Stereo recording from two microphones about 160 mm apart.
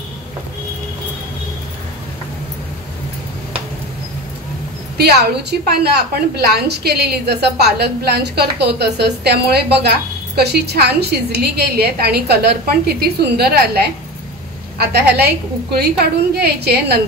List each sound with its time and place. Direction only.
4.9 s a woman's voice: 80° right